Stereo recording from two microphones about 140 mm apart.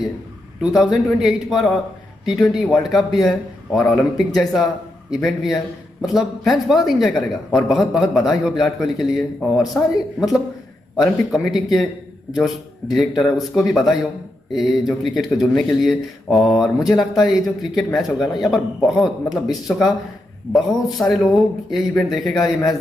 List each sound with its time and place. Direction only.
1.0 s speech: centre (ahead or behind)